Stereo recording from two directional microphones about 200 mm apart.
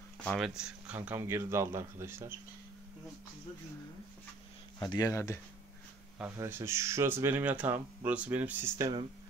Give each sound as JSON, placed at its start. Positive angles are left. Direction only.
{"t": 0.2, "sound": "speech", "side_deg": 0}
{"t": 4.7, "sound": "speech", "side_deg": 20}
{"t": 6.3, "sound": "speech", "side_deg": -15}